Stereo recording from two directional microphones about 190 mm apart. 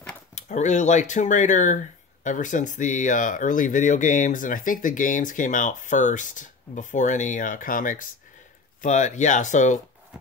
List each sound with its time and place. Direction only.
0.3 s speech: 40° left (ahead or behind)